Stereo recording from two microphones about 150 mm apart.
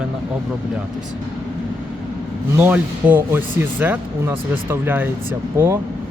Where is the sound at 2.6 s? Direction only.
10° right (ahead or behind).